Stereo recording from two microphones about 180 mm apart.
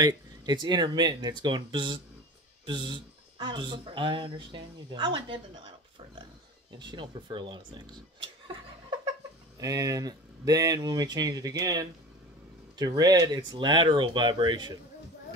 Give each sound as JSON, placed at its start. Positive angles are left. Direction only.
{"t": 0.0, "sound": "speech", "side_deg": -25}
{"t": 6.8, "sound": "speech", "side_deg": -25}
{"t": 9.6, "sound": "speech", "side_deg": -20}